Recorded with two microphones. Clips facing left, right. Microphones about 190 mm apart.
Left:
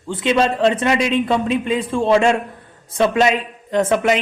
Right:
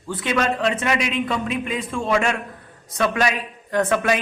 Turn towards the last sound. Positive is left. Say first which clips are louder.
# left 3 dB
turn(degrees=20)  # may be behind; listen again after turning